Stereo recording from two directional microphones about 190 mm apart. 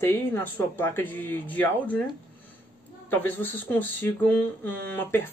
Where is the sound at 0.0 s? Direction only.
10° left (ahead or behind).